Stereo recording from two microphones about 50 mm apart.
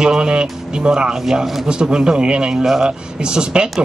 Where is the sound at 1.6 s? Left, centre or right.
Centre.